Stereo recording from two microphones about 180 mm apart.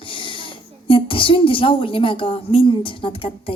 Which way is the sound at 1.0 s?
30° left (ahead or behind).